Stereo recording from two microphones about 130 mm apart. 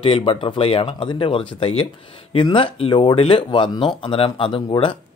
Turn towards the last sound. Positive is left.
turn(degrees=40)  # may be behind; listen again after turning